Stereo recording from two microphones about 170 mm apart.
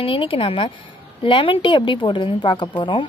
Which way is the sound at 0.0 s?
30° left (ahead or behind).